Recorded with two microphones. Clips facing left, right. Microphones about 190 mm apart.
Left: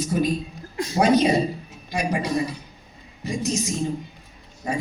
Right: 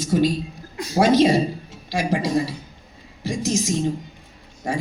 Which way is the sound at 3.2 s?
85° right.